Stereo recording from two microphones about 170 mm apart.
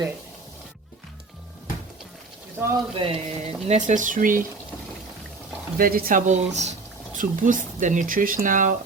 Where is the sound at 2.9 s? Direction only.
35° right (ahead or behind).